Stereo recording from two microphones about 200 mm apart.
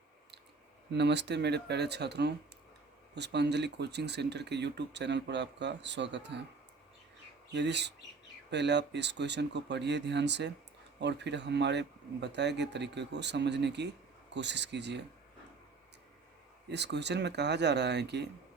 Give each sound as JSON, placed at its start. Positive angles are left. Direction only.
{"t": 0.9, "sound": "speech", "side_deg": -60}
{"t": 7.5, "sound": "speech", "side_deg": -60}
{"t": 16.6, "sound": "speech", "side_deg": -60}